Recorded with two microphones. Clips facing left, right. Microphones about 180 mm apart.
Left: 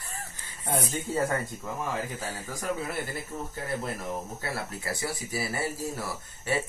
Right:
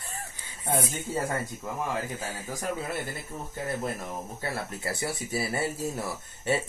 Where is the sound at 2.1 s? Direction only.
20° right (ahead or behind).